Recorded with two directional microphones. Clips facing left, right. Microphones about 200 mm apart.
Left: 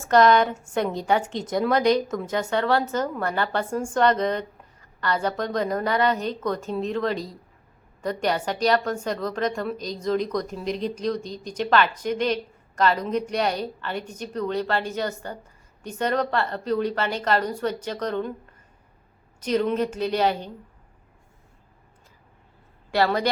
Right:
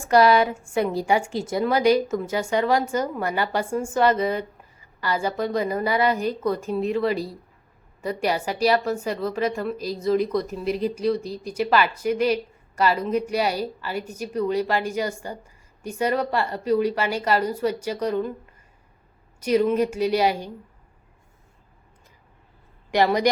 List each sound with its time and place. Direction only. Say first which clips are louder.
0.0 s a woman's voice: even; 10° right (ahead or behind)
19.4 s a woman's voice: right 3 dB; 10° right (ahead or behind)
22.9 s speech: right 3 dB; 15° right (ahead or behind)